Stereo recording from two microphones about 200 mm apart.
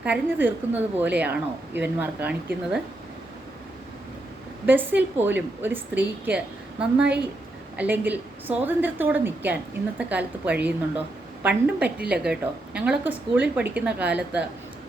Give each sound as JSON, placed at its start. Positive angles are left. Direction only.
{"t": 0.0, "sound": "a woman's voice", "side_deg": -10}
{"t": 4.6, "sound": "a woman's voice", "side_deg": -10}